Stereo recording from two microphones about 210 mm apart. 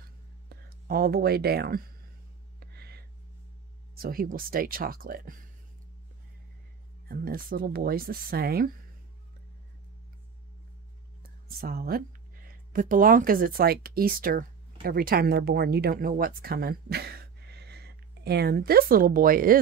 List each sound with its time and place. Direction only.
0.5 s speech: 45° right (ahead or behind)
2.6 s a sound: 50° right (ahead or behind)
3.9 s speech: 45° right (ahead or behind)
7.1 s speech: 45° right (ahead or behind)
11.4 s speech: 45° right (ahead or behind)